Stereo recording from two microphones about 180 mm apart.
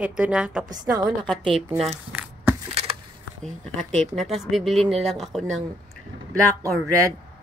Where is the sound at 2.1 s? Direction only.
10° right (ahead or behind).